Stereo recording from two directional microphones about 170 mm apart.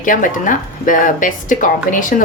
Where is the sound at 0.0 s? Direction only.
50° left (ahead or behind).